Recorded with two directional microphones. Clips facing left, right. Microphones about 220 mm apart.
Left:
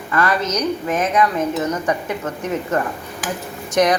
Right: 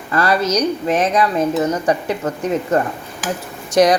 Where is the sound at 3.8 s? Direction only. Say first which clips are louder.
Right 4 dB; 35° right (ahead or behind).